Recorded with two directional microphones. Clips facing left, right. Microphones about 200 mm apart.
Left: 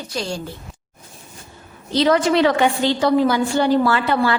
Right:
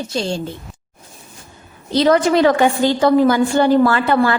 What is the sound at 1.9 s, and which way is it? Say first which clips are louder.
A woman's voice: right 2 dB; 45° right (ahead or behind).